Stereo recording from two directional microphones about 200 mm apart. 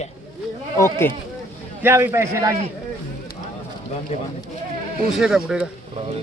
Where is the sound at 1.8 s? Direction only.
10° right (ahead or behind).